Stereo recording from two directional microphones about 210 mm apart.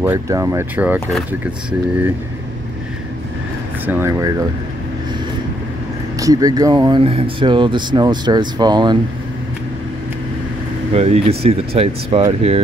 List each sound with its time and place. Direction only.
0.0 s speech: 15° right (ahead or behind)
3.8 s speech: 15° right (ahead or behind)
6.1 s speech: 15° right (ahead or behind)
10.9 s speech: 30° right (ahead or behind)